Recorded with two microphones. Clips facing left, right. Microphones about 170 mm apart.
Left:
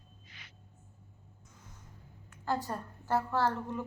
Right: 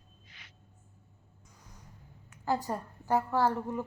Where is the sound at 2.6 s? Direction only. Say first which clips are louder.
Right 3 dB; 15° right (ahead or behind).